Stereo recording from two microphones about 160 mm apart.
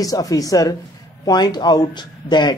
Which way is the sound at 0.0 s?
20° left (ahead or behind).